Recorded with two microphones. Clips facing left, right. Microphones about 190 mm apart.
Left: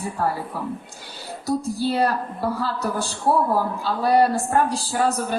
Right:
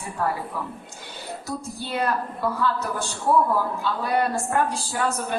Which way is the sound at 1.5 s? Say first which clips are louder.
Left 11 dB; 35° left (ahead or behind).